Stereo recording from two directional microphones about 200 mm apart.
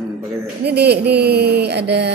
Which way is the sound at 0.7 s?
55° right (ahead or behind).